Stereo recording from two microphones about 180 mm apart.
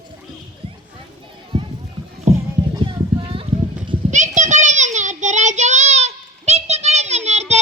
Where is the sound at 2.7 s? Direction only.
30° right (ahead or behind).